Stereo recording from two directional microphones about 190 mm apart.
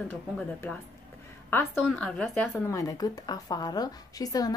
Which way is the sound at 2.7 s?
15° left (ahead or behind).